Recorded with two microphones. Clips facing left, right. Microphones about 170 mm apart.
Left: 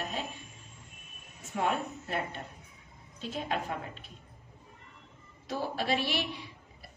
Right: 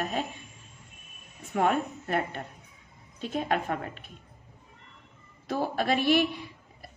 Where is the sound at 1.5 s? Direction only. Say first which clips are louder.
Right 5 dB; 55° right (ahead or behind).